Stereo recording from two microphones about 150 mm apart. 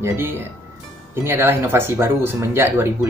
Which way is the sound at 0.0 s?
15° right (ahead or behind).